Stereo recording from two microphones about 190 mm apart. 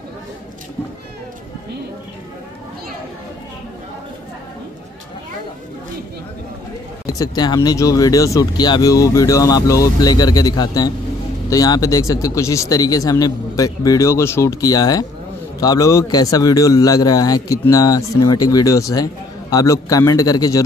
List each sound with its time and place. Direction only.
7.1 s speech: 20° left (ahead or behind)